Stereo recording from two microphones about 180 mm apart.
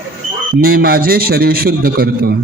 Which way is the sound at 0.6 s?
55° right (ahead or behind).